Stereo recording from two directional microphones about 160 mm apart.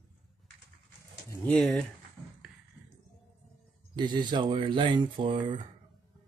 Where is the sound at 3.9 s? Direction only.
30° right (ahead or behind).